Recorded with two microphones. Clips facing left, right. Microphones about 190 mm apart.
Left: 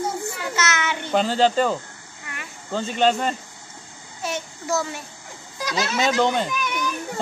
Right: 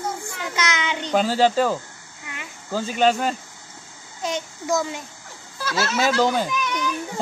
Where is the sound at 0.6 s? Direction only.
15° right (ahead or behind).